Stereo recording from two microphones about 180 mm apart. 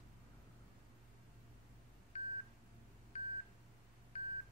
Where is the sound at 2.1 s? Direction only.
35° left (ahead or behind).